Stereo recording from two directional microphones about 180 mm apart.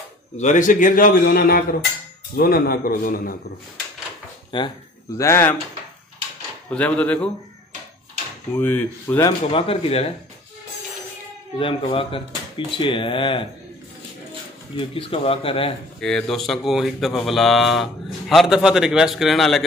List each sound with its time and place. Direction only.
0.4 s a man's voice: 45° left (ahead or behind)
4.5 s speech: 25° left (ahead or behind)
5.1 s speech: 15° left (ahead or behind)
6.7 s speech: 10° left (ahead or behind)
8.5 s speech: 10° left (ahead or behind)
9.5 s speech: 30° left (ahead or behind)
11.5 s speech: 30° left (ahead or behind)
14.8 s speech: 30° left (ahead or behind)
16.0 s speech: 5° left (ahead or behind)